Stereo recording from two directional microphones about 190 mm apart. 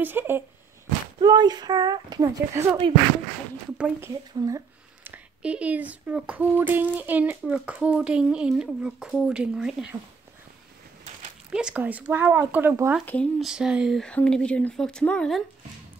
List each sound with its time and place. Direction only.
0.0 s speech: 10° right (ahead or behind)
1.2 s speech: 20° right (ahead or behind); by 9.9 s 5° right (ahead or behind)
11.5 s speech: 5° right (ahead or behind)
13.0 s speech: 5° left (ahead or behind)